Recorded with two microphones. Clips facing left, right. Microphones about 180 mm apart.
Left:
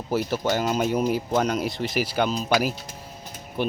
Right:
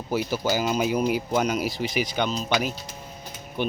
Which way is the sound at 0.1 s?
Centre (ahead or behind).